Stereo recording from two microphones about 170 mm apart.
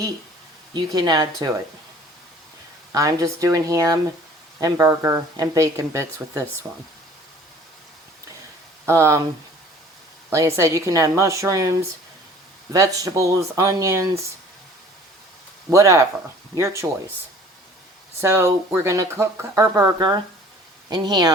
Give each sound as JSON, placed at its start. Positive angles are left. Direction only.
{"t": 0.7, "sound": "speech", "side_deg": -25}
{"t": 2.9, "sound": "speech", "side_deg": -20}
{"t": 8.9, "sound": "speech", "side_deg": -15}
{"t": 10.2, "sound": "speech", "side_deg": -20}
{"t": 15.7, "sound": "speech", "side_deg": -20}
{"t": 18.2, "sound": "speech", "side_deg": -15}